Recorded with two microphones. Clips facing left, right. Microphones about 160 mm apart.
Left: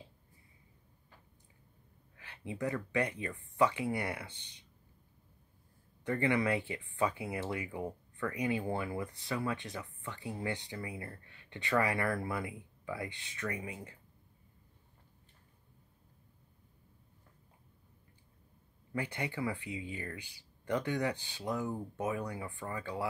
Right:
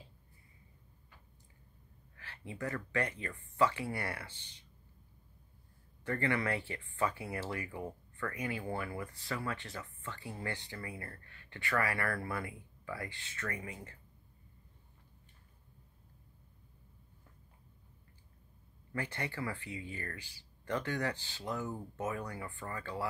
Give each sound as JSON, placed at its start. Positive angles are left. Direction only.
{"t": 2.1, "sound": "speech", "side_deg": 15}
{"t": 6.0, "sound": "speech", "side_deg": 15}
{"t": 18.9, "sound": "speech", "side_deg": 15}